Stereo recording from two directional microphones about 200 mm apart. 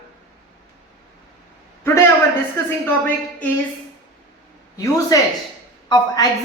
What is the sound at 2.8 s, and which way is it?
Speech, 10° left (ahead or behind).